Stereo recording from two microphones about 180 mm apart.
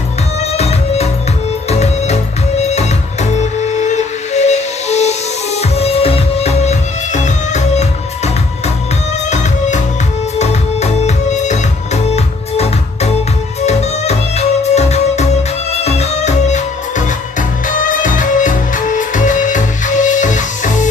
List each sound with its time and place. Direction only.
0.4 s music: 35° left (ahead or behind)
9.3 s music: 40° left (ahead or behind)
13.6 s music: 35° left (ahead or behind)